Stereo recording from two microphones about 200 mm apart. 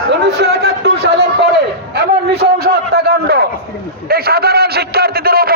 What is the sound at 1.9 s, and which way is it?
A man's voice, 50° right (ahead or behind).